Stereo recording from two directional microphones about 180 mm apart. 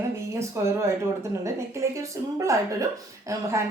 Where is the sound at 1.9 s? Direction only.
15° right (ahead or behind).